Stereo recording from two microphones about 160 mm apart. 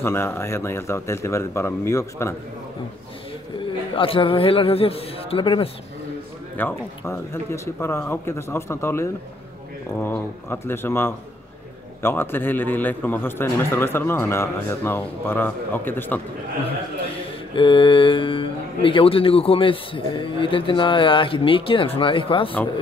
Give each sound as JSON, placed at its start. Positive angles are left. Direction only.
{"t": 0.0, "sound": "a man's voice", "side_deg": 15}
{"t": 3.5, "sound": "a man's voice", "side_deg": 35}
{"t": 6.5, "sound": "a man's voice", "side_deg": 15}
{"t": 17.6, "sound": "speech", "side_deg": 30}